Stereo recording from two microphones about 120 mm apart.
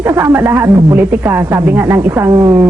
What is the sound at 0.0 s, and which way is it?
A woman's voice, 20° right (ahead or behind).